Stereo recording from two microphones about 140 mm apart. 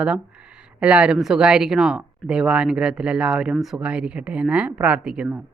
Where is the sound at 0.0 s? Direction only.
5° right (ahead or behind).